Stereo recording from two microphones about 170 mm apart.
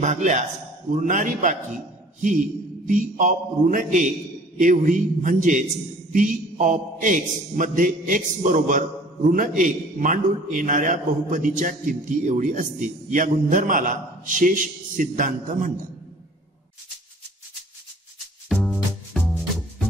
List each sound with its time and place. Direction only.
0.0 s a man's voice: 45° right (ahead or behind)
2.9 s a man's voice: 50° right (ahead or behind)
18.5 s music: centre (ahead or behind)